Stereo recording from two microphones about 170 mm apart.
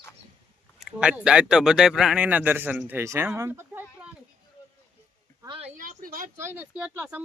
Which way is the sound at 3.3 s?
15° right (ahead or behind).